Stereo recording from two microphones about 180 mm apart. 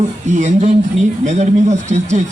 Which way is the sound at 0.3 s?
40° right (ahead or behind).